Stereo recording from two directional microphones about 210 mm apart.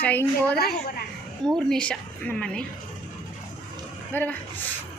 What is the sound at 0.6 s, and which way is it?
Speech, 50° left (ahead or behind).